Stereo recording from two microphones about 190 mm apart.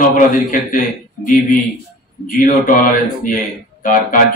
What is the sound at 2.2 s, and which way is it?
Speech, 45° left (ahead or behind).